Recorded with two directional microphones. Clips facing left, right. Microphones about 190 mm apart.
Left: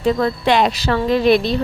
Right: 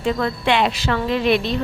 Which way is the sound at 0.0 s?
40° left (ahead or behind).